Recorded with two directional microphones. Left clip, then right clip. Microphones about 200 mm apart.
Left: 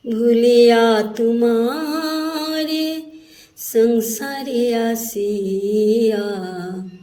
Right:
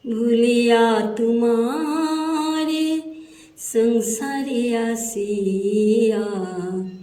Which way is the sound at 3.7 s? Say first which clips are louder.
Left 3 dB; 45° left (ahead or behind).